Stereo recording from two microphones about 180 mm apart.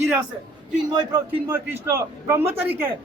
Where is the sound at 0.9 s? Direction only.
20° right (ahead or behind).